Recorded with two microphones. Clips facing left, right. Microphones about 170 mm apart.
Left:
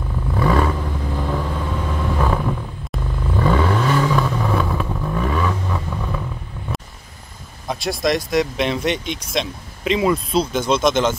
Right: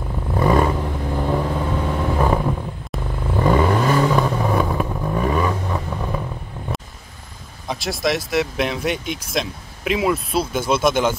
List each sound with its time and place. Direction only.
0.3 s vehicle: 20° right (ahead or behind)
7.6 s speech: centre (ahead or behind)